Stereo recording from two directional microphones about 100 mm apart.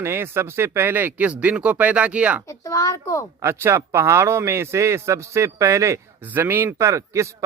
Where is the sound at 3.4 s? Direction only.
25° right (ahead or behind).